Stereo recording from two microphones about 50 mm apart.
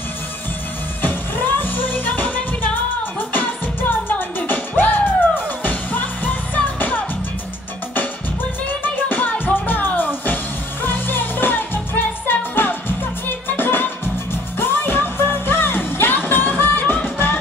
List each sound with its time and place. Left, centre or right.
1.0 s music: left
8.8 s music: left